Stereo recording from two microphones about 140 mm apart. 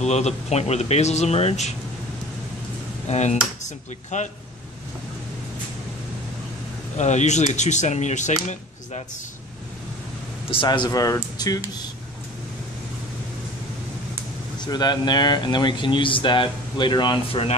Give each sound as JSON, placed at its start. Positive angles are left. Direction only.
{"t": 0.0, "sound": "speech", "side_deg": 50}
{"t": 3.1, "sound": "speech", "side_deg": 55}
{"t": 7.0, "sound": "speech", "side_deg": 55}
{"t": 10.5, "sound": "speech", "side_deg": 35}
{"t": 14.6, "sound": "speech", "side_deg": 30}